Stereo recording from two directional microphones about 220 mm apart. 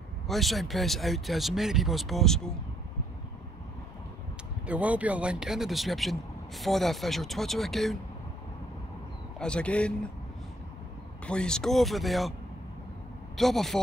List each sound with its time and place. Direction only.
0.3 s speech: centre (ahead or behind)
4.6 s speech: 5° right (ahead or behind)
9.4 s speech: 5° left (ahead or behind)
11.2 s speech: 5° left (ahead or behind)
13.4 s speech: centre (ahead or behind)